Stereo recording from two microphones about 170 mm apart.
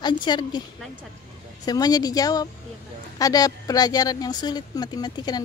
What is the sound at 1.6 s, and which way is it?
Speech, 20° left (ahead or behind).